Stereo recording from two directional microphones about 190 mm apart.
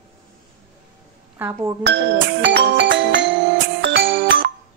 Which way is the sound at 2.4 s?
70° right (ahead or behind).